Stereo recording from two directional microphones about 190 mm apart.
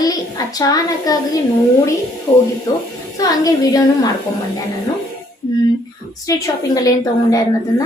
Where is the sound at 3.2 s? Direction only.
20° left (ahead or behind).